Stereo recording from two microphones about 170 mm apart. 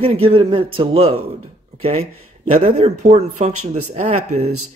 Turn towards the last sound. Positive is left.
turn(degrees=-45)  # may be behind; listen again after turning